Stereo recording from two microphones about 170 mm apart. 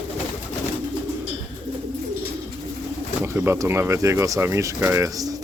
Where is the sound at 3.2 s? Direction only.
15° right (ahead or behind).